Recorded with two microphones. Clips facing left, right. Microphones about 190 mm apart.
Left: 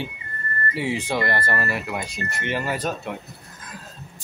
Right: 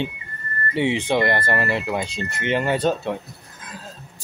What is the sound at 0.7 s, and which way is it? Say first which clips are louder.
Speech: right 5 dB; 20° right (ahead or behind).